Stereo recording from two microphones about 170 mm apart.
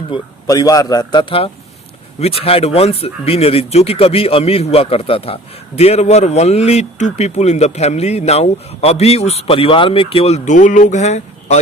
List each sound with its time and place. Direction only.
0.1 s a man's voice: 20° left (ahead or behind); by 11.6 s 40° left (ahead or behind)